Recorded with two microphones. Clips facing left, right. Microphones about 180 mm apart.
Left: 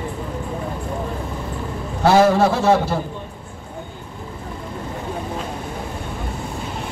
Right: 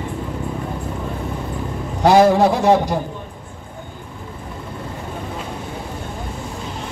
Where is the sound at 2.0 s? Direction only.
15° right (ahead or behind).